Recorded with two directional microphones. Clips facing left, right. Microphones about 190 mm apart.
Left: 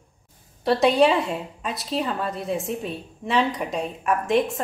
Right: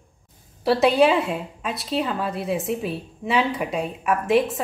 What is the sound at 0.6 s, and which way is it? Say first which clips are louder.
A woman's voice: right 1 dB; 5° right (ahead or behind).